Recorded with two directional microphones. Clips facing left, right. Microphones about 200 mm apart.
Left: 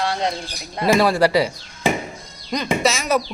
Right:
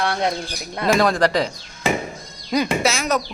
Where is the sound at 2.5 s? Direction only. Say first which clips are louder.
Right 1 dB; 5° right (ahead or behind).